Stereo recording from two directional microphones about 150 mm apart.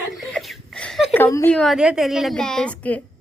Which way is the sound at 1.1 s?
15° left (ahead or behind).